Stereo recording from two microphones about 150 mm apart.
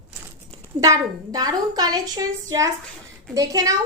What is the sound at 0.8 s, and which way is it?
A woman's voice, 25° right (ahead or behind).